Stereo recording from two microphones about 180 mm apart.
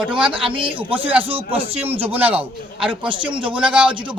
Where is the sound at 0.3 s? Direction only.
30° right (ahead or behind).